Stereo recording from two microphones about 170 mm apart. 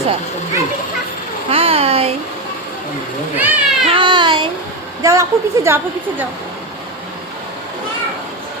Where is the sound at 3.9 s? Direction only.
30° right (ahead or behind).